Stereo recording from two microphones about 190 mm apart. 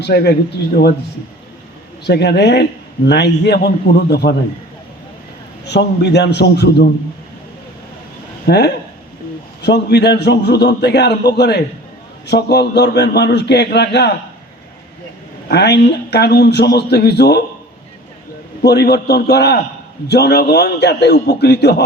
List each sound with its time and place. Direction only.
0.0 s a man's voice: 60° left (ahead or behind)
2.0 s a man's voice: 60° left (ahead or behind)
5.6 s a man's voice: 60° left (ahead or behind)
8.4 s a man's voice: 60° left (ahead or behind)
15.4 s a man's voice: 60° left (ahead or behind)
18.6 s a man's voice: 60° left (ahead or behind)